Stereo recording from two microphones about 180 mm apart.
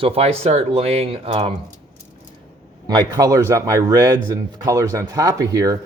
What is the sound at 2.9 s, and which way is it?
Speech, 20° right (ahead or behind).